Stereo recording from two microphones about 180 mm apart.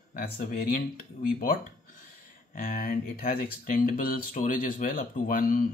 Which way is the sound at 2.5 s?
55° left (ahead or behind).